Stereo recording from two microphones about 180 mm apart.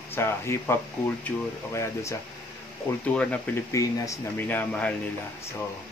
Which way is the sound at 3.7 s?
20° left (ahead or behind).